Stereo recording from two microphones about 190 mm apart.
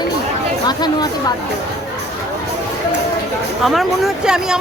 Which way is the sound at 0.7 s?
20° left (ahead or behind).